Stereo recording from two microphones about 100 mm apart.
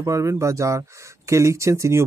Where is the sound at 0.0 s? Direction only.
30° right (ahead or behind).